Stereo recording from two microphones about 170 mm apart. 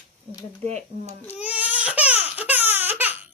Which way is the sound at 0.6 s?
40° right (ahead or behind).